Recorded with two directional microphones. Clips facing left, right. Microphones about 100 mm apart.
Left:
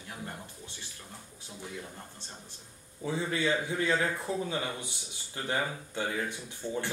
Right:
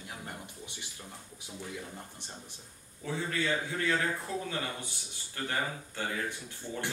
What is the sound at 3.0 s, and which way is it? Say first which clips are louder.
A man's voice: left 3 dB; 20° left (ahead or behind).